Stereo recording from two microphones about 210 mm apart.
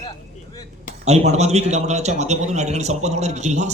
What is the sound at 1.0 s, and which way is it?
A man's voice, 30° right (ahead or behind).